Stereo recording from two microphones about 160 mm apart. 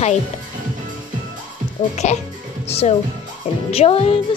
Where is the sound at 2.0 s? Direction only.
45° left (ahead or behind).